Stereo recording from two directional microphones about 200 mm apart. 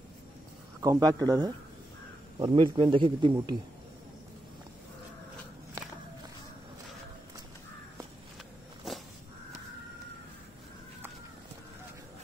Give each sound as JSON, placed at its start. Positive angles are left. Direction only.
{"t": 0.7, "sound": "a man's voice", "side_deg": -15}